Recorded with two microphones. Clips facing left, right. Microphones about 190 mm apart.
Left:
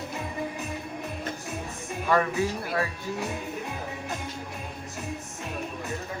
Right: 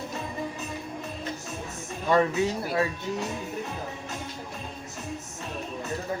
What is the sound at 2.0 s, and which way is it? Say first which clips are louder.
Speech: right 2 dB; 25° right (ahead or behind).